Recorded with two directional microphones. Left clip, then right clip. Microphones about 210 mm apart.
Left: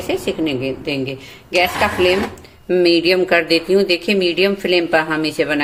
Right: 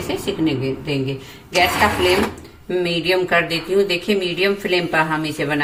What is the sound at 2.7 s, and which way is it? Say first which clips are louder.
Speech: left 5 dB; 45° left (ahead or behind).